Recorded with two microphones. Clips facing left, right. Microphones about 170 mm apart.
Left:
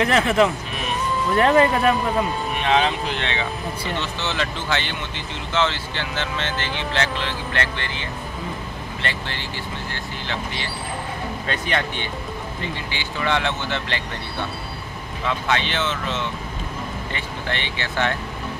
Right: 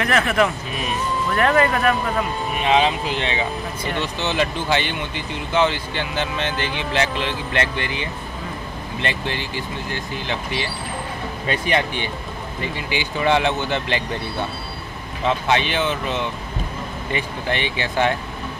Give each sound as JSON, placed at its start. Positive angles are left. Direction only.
{"t": 0.0, "sound": "speech", "side_deg": 25}
{"t": 2.6, "sound": "speech", "side_deg": -10}
{"t": 11.4, "sound": "speech", "side_deg": -10}
{"t": 15.2, "sound": "speech", "side_deg": -20}